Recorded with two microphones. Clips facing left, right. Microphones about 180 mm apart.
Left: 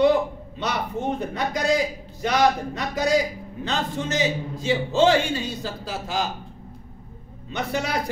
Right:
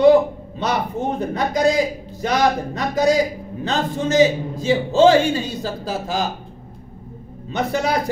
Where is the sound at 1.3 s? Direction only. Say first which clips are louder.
Right 6 dB; 40° right (ahead or behind).